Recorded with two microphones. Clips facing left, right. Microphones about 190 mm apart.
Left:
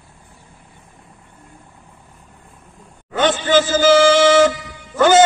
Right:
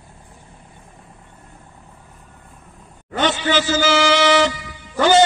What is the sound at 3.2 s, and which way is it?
Music, 50° left (ahead or behind).